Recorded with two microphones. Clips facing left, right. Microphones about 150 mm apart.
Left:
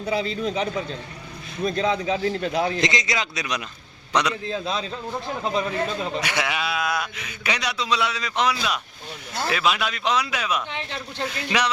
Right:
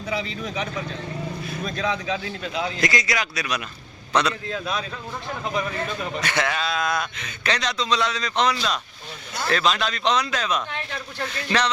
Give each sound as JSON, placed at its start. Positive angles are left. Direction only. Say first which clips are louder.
{"t": 0.0, "sound": "speech", "louder": "left 4 dB", "side_deg": 35}
{"t": 2.4, "sound": "a man's voice", "louder": "left 4 dB", "side_deg": 45}
{"t": 2.8, "sound": "a man's voice", "louder": "even", "side_deg": 20}
{"t": 4.4, "sound": "a man's voice", "louder": "left 1 dB", "side_deg": 25}
{"t": 6.1, "sound": "a man's voice", "louder": "right 5 dB", "side_deg": 10}
{"t": 10.7, "sound": "a man's voice", "louder": "even", "side_deg": 20}